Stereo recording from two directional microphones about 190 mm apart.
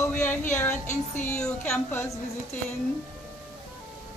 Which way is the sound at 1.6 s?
10° left (ahead or behind).